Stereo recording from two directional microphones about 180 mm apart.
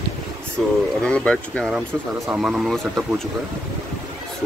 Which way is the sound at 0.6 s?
5° left (ahead or behind).